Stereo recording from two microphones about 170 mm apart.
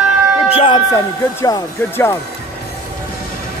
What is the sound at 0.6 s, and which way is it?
Speech, 25° left (ahead or behind).